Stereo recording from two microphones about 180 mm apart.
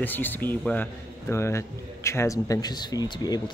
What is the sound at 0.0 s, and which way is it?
A man's voice, 10° left (ahead or behind).